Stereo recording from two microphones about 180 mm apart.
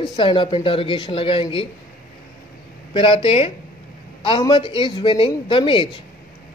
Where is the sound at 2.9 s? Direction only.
30° left (ahead or behind).